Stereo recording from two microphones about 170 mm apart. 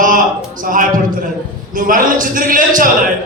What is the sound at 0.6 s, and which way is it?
A man's voice, 55° right (ahead or behind).